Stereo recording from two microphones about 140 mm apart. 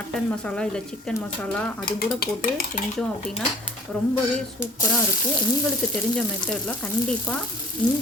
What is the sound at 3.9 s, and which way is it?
Frying, 5° left (ahead or behind).